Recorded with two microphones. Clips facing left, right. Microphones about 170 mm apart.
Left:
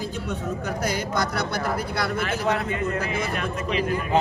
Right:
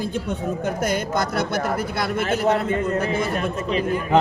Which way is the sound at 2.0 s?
25° right (ahead or behind).